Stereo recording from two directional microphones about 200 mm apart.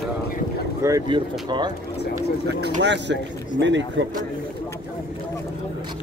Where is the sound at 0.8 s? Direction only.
20° right (ahead or behind).